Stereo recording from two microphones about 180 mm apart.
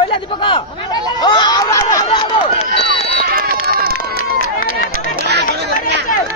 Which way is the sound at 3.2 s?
55° right (ahead or behind).